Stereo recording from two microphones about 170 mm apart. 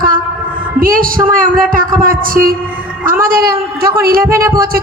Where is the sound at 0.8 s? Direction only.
55° right (ahead or behind).